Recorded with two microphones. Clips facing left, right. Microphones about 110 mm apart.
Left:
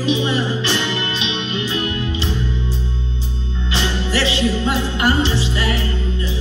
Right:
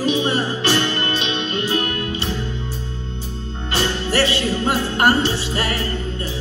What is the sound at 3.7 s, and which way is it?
Music, 50° right (ahead or behind).